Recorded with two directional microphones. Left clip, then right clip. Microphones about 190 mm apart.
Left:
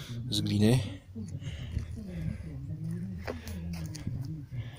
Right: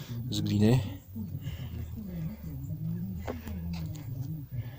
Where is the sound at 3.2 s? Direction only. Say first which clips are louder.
Left 1 dB; 20° left (ahead or behind).